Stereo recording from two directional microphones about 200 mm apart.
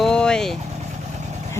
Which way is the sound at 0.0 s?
5° left (ahead or behind).